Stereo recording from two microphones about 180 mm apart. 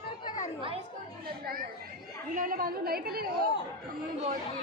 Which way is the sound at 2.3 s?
50° right (ahead or behind).